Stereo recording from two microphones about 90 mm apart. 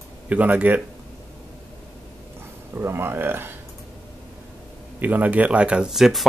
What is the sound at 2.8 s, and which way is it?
Speech, 25° right (ahead or behind).